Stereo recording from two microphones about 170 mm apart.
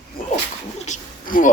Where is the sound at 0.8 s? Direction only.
50° left (ahead or behind).